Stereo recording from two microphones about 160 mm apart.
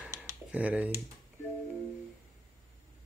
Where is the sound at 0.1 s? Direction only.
20° right (ahead or behind).